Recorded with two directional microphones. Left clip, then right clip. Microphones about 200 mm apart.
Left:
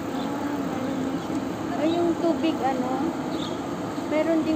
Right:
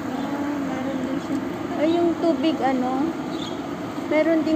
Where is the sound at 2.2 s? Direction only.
50° right (ahead or behind).